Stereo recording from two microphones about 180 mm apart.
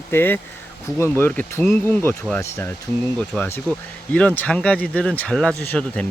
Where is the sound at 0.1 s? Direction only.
10° left (ahead or behind).